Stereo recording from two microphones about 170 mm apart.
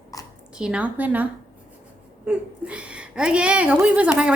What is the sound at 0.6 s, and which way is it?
Speech, 5° right (ahead or behind).